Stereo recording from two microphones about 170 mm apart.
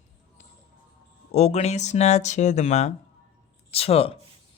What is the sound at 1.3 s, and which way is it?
Speech, 40° left (ahead or behind).